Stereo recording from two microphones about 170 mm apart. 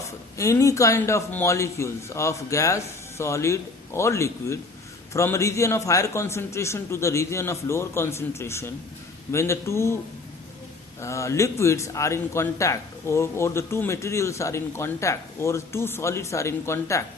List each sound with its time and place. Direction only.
0.3 s a man's voice: 15° left (ahead or behind)
11.0 s a man's voice: 15° left (ahead or behind)